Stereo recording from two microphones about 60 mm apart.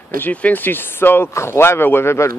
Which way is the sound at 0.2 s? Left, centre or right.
Left.